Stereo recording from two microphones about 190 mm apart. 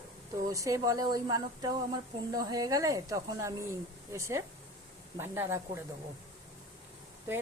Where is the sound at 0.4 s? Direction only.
15° right (ahead or behind).